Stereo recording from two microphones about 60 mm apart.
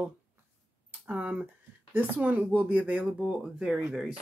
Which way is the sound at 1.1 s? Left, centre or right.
Right.